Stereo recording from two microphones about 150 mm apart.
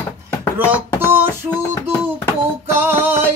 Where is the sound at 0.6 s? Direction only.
15° right (ahead or behind).